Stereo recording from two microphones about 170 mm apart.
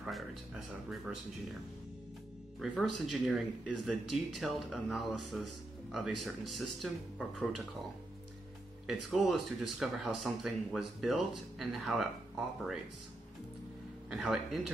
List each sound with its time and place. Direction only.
0.0 s speech: centre (ahead or behind)
2.7 s speech: centre (ahead or behind)
8.8 s speech: centre (ahead or behind)
14.1 s speech: centre (ahead or behind)